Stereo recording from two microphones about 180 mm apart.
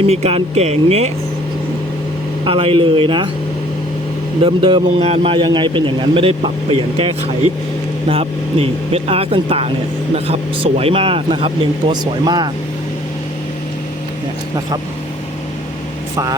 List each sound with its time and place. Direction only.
0.0 s speech: 35° right (ahead or behind)
2.4 s a man's voice: 30° right (ahead or behind)
4.4 s a man's voice: 30° right (ahead or behind)